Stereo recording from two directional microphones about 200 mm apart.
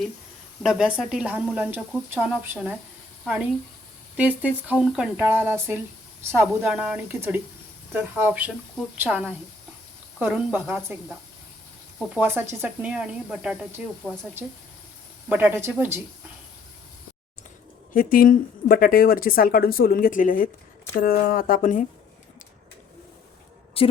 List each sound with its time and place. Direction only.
0.6 s speech: 5° right (ahead or behind)
4.2 s speech: 10° right (ahead or behind)
11.9 s speech: 5° right (ahead or behind)
15.3 s speech: 10° right (ahead or behind)
17.9 s speech: 45° left (ahead or behind)
23.8 s a woman's voice: 30° left (ahead or behind)